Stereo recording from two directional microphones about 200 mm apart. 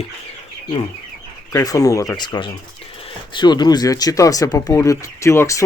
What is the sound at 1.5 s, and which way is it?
Speech, 15° left (ahead or behind).